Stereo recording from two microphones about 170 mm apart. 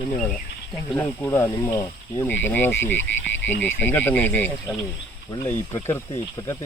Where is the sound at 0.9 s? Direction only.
15° left (ahead or behind).